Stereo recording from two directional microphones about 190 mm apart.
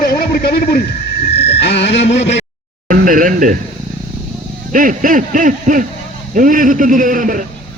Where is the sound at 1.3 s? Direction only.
60° left (ahead or behind).